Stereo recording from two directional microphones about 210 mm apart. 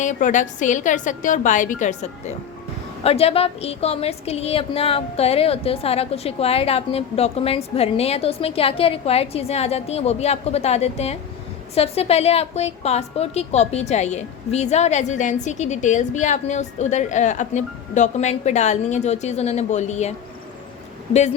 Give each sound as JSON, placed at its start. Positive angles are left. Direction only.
{"t": 0.0, "sound": "a woman's voice", "side_deg": 35}